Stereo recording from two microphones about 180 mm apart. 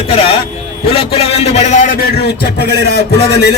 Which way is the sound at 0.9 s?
30° left (ahead or behind).